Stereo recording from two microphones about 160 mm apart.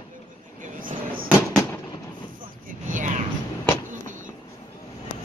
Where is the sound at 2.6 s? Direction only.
55° right (ahead or behind).